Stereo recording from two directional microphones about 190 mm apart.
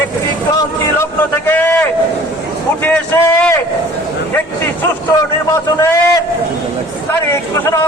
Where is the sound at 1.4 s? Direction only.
10° left (ahead or behind).